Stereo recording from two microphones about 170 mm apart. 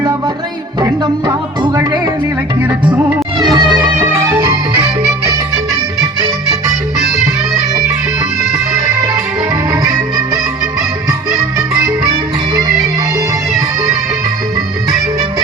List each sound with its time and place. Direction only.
0.8 s music: 20° right (ahead or behind)
3.3 s music: 25° right (ahead or behind)
6.0 s music: 20° right (ahead or behind)